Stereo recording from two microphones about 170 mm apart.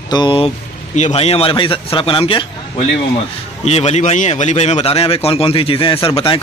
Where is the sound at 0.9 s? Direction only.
40° left (ahead or behind).